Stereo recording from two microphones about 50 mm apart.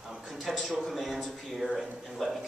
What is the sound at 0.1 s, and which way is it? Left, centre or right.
A man's voice, centre.